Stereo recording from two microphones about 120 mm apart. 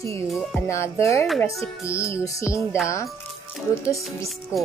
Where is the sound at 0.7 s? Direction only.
25° left (ahead or behind).